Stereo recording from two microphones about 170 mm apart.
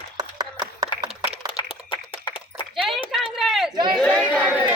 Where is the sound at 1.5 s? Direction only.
30° left (ahead or behind).